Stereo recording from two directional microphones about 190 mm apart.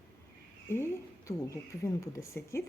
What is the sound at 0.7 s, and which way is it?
Speech, 15° left (ahead or behind).